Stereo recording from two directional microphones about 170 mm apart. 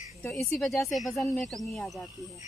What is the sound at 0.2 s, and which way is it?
Speech, 5° left (ahead or behind).